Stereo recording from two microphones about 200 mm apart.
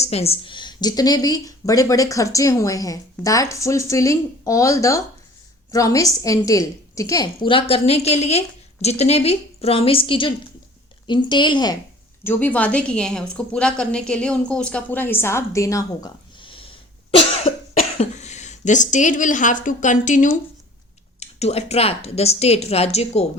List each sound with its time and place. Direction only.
0.0 s a woman's voice: 30° left (ahead or behind)
12.2 s a woman's voice: 10° left (ahead or behind); by 23.4 s 30° left (ahead or behind)